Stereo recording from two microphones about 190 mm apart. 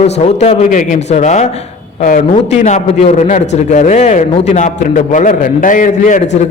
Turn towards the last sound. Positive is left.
turn(degrees=40)  # may be behind; listen again after turning